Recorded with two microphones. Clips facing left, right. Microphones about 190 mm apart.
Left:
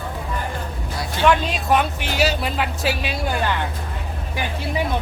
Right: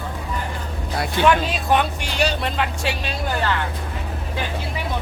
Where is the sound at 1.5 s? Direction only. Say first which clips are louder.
Even; centre (ahead or behind).